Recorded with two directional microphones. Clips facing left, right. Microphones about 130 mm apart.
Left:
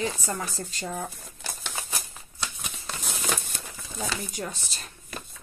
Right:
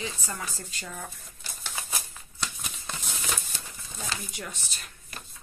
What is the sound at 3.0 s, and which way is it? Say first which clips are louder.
Crumpling: left 6 dB; 55° left (ahead or behind).